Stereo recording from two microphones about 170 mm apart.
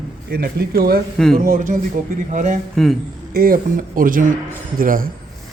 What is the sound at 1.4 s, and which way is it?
Speech, 50° right (ahead or behind).